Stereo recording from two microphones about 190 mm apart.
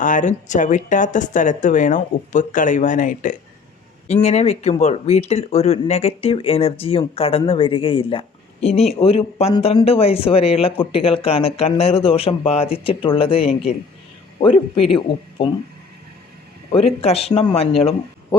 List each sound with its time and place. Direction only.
0.0 s a man's voice: 40° left (ahead or behind)
16.7 s speech: 30° left (ahead or behind)